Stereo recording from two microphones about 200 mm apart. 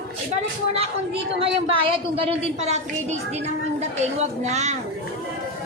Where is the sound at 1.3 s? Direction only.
25° right (ahead or behind).